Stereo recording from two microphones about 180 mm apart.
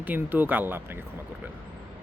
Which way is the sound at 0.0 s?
10° right (ahead or behind).